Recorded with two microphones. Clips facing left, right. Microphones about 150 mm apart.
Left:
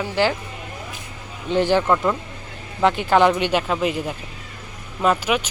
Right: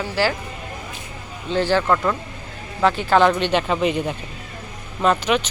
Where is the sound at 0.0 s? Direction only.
20° left (ahead or behind).